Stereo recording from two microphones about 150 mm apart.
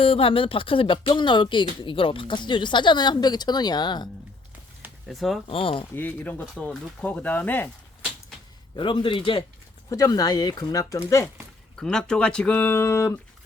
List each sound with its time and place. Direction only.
0.0 s speech: 40° left (ahead or behind)
5.0 s speech: centre (ahead or behind)
5.5 s speech: 40° left (ahead or behind)
6.0 s speech: 10° left (ahead or behind)
8.7 s speech: 35° left (ahead or behind)
9.9 s speech: 25° left (ahead or behind)
11.8 s speech: 5° left (ahead or behind)